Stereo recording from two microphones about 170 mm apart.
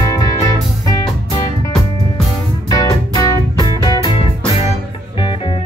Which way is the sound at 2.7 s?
20° left (ahead or behind).